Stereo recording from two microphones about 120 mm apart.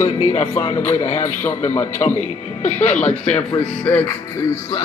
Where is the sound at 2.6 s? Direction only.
75° left (ahead or behind).